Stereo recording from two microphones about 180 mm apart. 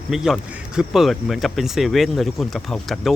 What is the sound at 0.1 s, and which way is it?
Speech, 5° right (ahead or behind).